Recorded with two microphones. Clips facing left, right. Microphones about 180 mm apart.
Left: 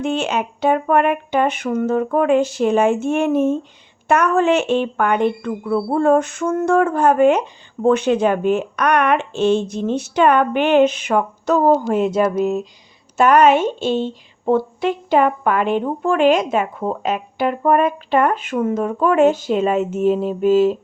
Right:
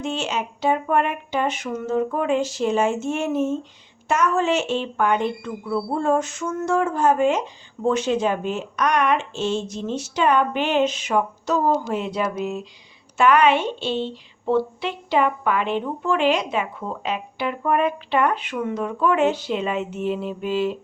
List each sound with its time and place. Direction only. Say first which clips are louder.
0.0 s a woman's voice: left 6 dB; 60° left (ahead or behind); by 20.7 s 40° left (ahead or behind)